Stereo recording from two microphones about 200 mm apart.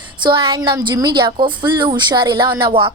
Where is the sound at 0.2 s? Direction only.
20° right (ahead or behind).